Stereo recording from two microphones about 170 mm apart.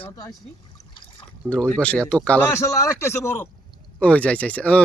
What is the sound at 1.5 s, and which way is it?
Speech, 5° left (ahead or behind).